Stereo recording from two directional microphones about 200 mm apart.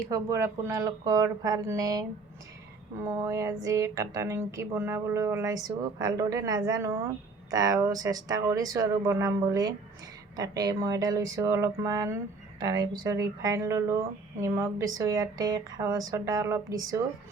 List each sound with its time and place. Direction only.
0.1 s a woman's voice: 15° right (ahead or behind)